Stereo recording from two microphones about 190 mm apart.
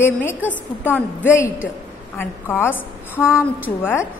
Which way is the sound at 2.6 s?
15° left (ahead or behind).